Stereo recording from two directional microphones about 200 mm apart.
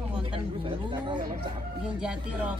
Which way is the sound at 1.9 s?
5° right (ahead or behind).